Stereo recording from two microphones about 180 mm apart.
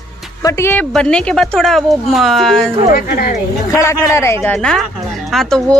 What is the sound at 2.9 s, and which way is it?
Speech, 55° left (ahead or behind).